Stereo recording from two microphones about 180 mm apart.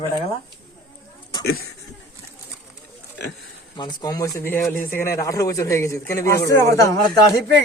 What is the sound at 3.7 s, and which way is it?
A man's voice, 25° left (ahead or behind).